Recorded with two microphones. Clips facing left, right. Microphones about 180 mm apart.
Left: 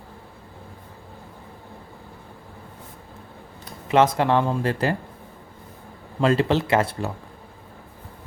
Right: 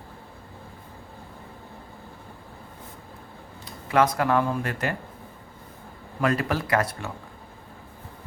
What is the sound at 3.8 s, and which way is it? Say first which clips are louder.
Speech: left 3 dB; 25° left (ahead or behind).